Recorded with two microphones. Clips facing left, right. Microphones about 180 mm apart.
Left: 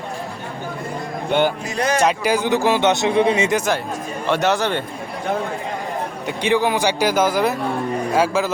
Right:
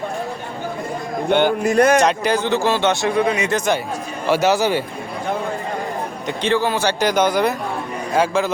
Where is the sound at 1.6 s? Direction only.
55° right (ahead or behind).